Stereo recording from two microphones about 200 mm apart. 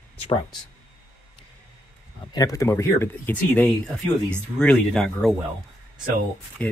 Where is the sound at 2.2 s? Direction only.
20° left (ahead or behind); by 5.3 s 5° left (ahead or behind).